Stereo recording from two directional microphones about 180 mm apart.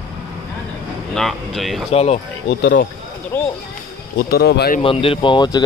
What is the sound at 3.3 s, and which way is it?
Speech, 10° left (ahead or behind).